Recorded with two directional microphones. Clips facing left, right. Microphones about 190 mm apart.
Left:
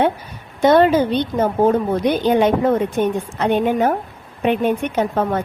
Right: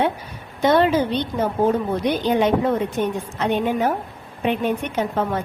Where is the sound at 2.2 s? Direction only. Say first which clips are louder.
Left 3 dB; 50° left (ahead or behind).